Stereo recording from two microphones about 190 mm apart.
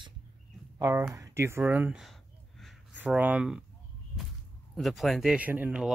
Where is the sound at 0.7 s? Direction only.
15° right (ahead or behind).